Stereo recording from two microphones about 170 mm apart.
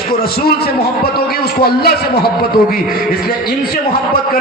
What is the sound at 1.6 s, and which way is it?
Speech, 65° left (ahead or behind).